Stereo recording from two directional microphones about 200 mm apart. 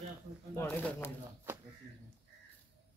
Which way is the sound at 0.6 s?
10° left (ahead or behind).